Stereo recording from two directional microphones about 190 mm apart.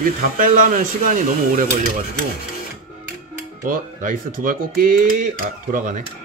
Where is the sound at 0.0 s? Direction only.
45° right (ahead or behind).